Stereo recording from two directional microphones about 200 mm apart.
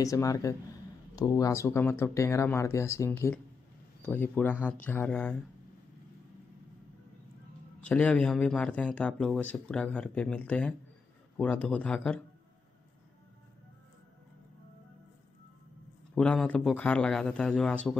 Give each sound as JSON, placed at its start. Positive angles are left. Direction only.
{"t": 0.0, "sound": "speech", "side_deg": 15}
{"t": 7.8, "sound": "speech", "side_deg": 5}
{"t": 16.2, "sound": "speech", "side_deg": 5}